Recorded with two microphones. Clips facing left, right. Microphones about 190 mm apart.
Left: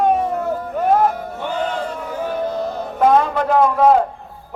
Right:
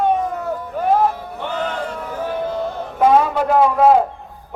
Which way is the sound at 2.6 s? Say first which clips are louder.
Left 1 dB; 40° left (ahead or behind).